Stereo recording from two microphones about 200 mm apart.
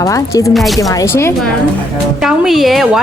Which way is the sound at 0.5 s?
Centre (ahead or behind).